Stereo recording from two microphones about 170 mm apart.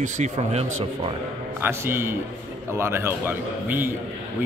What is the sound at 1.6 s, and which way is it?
Speech, 15° right (ahead or behind).